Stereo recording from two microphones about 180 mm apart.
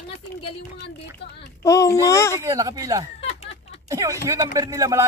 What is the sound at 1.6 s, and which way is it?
Speech, 15° left (ahead or behind).